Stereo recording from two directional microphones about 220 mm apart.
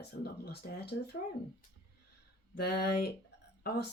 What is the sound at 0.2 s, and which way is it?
Speech, 45° left (ahead or behind).